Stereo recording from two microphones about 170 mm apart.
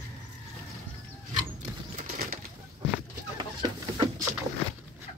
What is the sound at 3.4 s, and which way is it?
Chicken, 25° right (ahead or behind).